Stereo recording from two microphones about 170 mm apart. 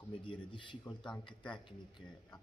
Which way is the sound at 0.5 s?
30° left (ahead or behind).